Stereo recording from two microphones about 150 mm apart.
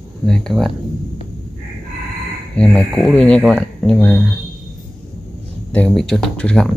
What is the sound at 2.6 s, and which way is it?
Speech, centre (ahead or behind).